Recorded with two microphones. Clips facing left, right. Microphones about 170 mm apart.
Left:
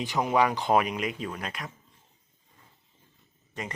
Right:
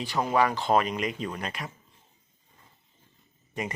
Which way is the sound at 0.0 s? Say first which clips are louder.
Even; 20° left (ahead or behind).